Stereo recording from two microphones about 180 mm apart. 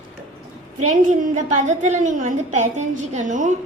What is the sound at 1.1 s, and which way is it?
A woman's voice, 45° right (ahead or behind).